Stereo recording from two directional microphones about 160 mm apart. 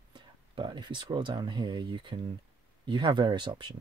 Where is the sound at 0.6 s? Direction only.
30° right (ahead or behind).